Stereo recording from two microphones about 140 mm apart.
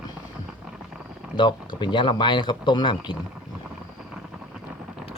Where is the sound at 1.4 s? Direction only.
35° left (ahead or behind).